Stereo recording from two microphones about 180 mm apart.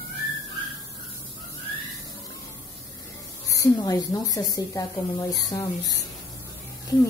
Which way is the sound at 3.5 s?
20° left (ahead or behind).